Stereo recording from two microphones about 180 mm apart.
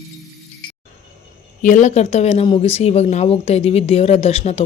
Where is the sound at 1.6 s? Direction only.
45° left (ahead or behind).